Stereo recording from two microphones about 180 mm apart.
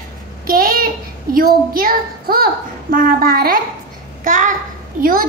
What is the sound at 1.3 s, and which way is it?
A child's voice, 50° right (ahead or behind).